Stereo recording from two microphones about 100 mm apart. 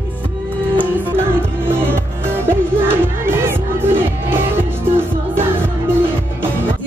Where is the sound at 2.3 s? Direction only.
20° right (ahead or behind).